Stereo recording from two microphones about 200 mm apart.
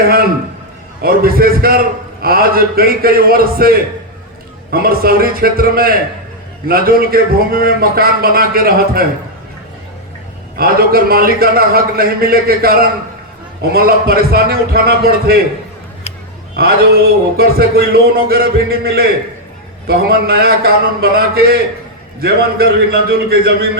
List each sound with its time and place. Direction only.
0.0 s a sound: 50° right (ahead or behind)
1.0 s a man's voice: 50° right (ahead or behind)
10.6 s a man's voice: 50° right (ahead or behind)
16.6 s a man's voice: 50° right (ahead or behind)